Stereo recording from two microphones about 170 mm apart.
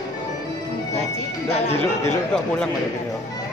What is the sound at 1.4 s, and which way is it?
Music, 40° left (ahead or behind).